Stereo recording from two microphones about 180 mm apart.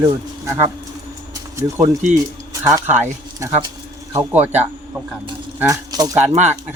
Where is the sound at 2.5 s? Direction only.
20° right (ahead or behind).